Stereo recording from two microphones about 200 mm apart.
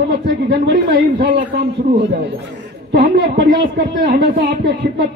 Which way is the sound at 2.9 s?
55° right (ahead or behind).